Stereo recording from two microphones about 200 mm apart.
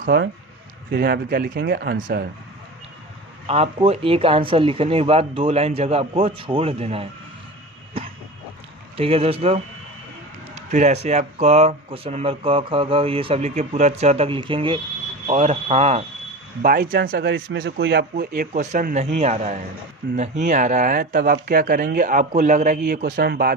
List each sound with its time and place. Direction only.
0.0 s speech: 55° right (ahead or behind)
3.4 s speech: 30° right (ahead or behind)
8.0 s a sound: 30° right (ahead or behind)
8.9 s speech: 30° right (ahead or behind)
16.9 s speech: 45° right (ahead or behind); by 18.0 s 60° right (ahead or behind)
18.1 s speech: 45° right (ahead or behind)